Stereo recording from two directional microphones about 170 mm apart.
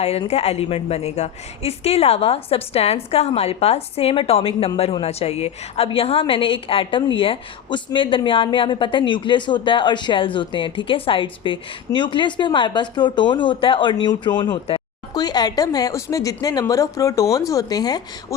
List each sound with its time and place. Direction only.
0.0 s a woman's voice: 35° left (ahead or behind); by 18.3 s 20° left (ahead or behind)